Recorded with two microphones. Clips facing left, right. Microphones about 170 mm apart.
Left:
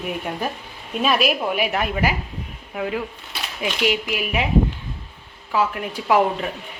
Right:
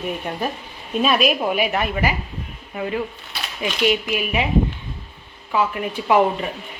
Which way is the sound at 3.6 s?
10° left (ahead or behind).